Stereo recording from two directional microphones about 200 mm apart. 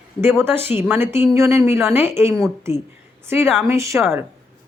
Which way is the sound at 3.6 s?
15° right (ahead or behind).